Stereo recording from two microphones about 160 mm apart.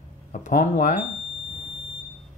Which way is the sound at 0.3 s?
50° left (ahead or behind).